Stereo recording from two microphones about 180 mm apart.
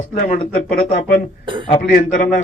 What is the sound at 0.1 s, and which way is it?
Speech, 50° left (ahead or behind).